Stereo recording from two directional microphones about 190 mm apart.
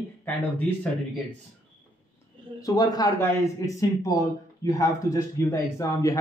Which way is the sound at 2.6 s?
20° left (ahead or behind).